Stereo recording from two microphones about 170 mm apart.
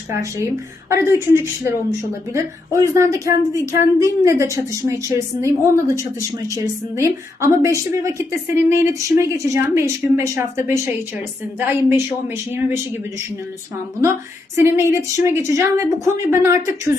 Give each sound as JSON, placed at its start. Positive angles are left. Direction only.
{"t": 0.9, "sound": "a woman's voice", "side_deg": -15}
{"t": 7.4, "sound": "a woman's voice", "side_deg": -15}
{"t": 14.0, "sound": "a woman's voice", "side_deg": -15}